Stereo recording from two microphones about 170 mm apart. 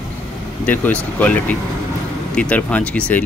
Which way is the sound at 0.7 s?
10° left (ahead or behind).